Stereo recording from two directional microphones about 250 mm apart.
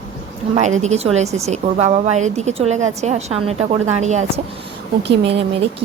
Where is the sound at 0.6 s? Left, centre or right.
Right.